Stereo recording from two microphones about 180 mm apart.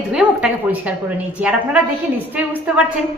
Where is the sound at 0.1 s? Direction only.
5° right (ahead or behind).